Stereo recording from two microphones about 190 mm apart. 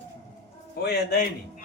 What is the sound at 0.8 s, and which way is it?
Speech, 55° left (ahead or behind).